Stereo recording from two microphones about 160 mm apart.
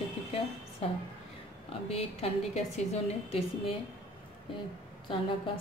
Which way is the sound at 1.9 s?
40° left (ahead or behind).